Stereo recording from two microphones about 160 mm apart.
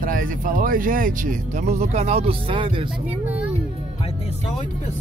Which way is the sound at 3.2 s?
5° right (ahead or behind).